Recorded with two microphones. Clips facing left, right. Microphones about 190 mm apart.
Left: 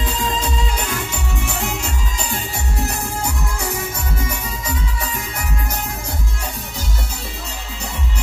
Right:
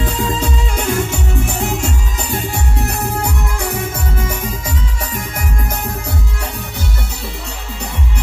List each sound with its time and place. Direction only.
0.0 s music: 55° right (ahead or behind)
2.2 s music: 60° right (ahead or behind)